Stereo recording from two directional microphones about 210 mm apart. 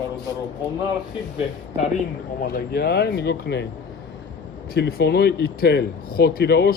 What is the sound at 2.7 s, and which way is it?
Speech, 50° left (ahead or behind).